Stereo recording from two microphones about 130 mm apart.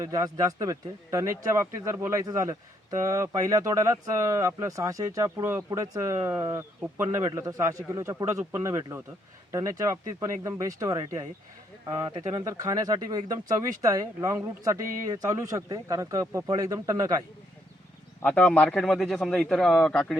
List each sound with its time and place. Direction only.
0.0 s speech: 30° right (ahead or behind)
18.2 s a man's voice: 10° left (ahead or behind)